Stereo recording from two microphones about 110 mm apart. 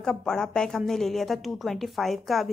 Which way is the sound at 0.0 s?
5° left (ahead or behind).